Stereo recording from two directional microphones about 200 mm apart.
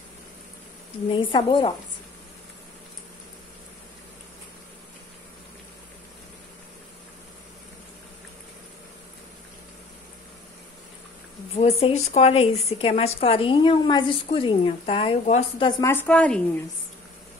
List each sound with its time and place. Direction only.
1.0 s speech: 25° left (ahead or behind)
11.5 s speech: 30° left (ahead or behind)
15.8 s a woman's voice: 10° left (ahead or behind)